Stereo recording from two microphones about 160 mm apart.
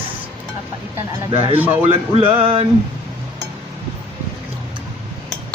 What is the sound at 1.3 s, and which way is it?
Music, 35° right (ahead or behind).